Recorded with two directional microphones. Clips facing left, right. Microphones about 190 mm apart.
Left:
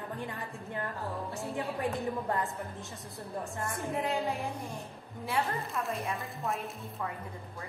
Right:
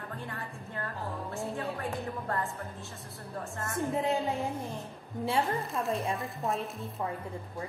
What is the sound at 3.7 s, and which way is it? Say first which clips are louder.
A woman's voice: right 4 dB; 25° right (ahead or behind).